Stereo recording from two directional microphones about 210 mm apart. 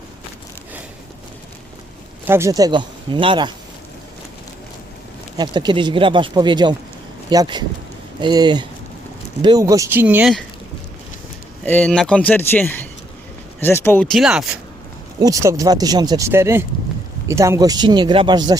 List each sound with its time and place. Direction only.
2.2 s speech: 10° right (ahead or behind)
5.4 s speech: 20° right (ahead or behind); by 10.4 s 5° right (ahead or behind)
11.6 s speech: 5° left (ahead or behind)
15.2 s speech: 15° right (ahead or behind)